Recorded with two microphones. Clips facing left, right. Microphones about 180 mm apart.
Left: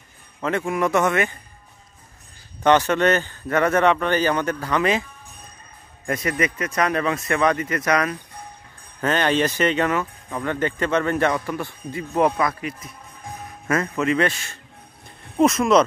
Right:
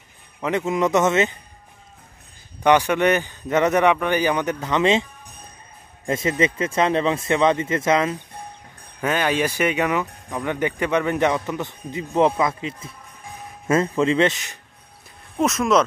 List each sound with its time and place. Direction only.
0.4 s speech: 20° right (ahead or behind)
2.6 s speech: 15° right (ahead or behind)
6.0 s speech: 25° right (ahead or behind)
9.0 s speech: 10° right (ahead or behind)
15.3 s speech: centre (ahead or behind)